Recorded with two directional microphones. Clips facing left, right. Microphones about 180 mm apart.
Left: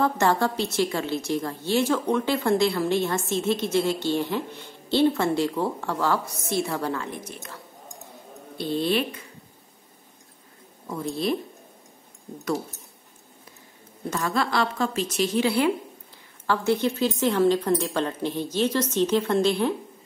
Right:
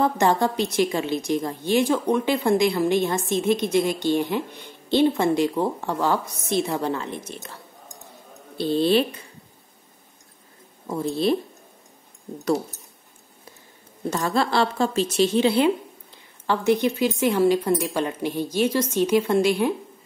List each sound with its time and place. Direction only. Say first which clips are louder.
0.0 s a woman's voice: right 2 dB; 15° right (ahead or behind)
8.5 s speech: right 5 dB; 30° right (ahead or behind)
10.9 s speech: right 4 dB; 30° right (ahead or behind)
14.1 s a woman's voice: right 3 dB; 30° right (ahead or behind); by 19.7 s 10° right (ahead or behind)